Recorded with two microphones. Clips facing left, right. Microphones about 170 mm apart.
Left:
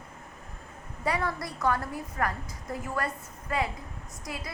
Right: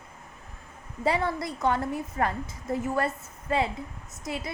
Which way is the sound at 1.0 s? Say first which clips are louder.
Right 4 dB; 25° right (ahead or behind).